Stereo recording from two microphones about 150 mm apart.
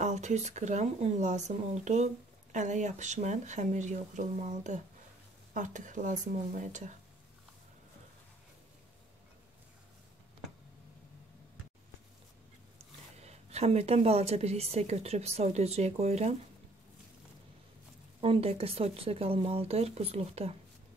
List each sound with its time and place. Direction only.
0.0 s a woman's voice: 50° right (ahead or behind)
13.2 s a woman's voice: 45° right (ahead or behind)
18.2 s speech: 40° right (ahead or behind)